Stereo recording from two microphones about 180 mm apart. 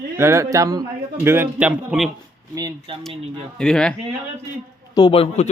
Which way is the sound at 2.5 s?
20° right (ahead or behind).